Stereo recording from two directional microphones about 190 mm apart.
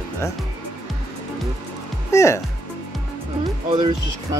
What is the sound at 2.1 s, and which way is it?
Speech, 15° left (ahead or behind).